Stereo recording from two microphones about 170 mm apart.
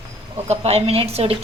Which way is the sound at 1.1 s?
35° right (ahead or behind).